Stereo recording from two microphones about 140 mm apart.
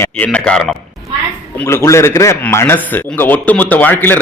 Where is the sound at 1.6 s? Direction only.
20° left (ahead or behind).